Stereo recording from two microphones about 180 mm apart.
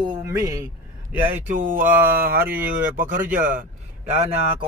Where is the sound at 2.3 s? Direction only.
10° right (ahead or behind).